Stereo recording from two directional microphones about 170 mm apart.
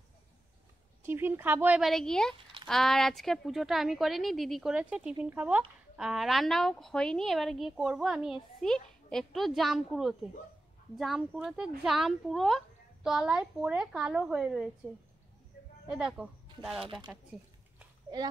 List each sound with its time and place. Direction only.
1.0 s a woman's voice: 15° right (ahead or behind)
15.9 s speech: 5° right (ahead or behind)
16.8 s speech: 30° right (ahead or behind)